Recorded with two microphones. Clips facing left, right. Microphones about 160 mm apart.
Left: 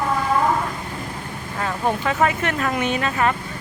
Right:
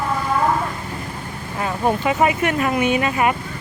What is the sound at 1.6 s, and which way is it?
Speech, 10° right (ahead or behind).